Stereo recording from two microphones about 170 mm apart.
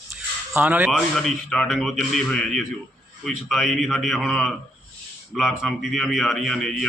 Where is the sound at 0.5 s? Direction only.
10° right (ahead or behind).